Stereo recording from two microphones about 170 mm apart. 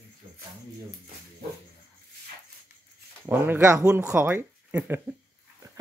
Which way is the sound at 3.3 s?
15° right (ahead or behind).